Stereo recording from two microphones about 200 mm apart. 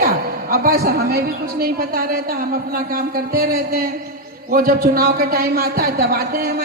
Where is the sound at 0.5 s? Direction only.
50° right (ahead or behind).